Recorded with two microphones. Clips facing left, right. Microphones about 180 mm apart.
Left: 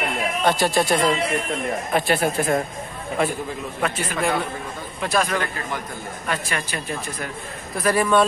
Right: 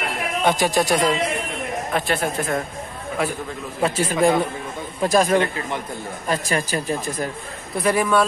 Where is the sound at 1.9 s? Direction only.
10° left (ahead or behind).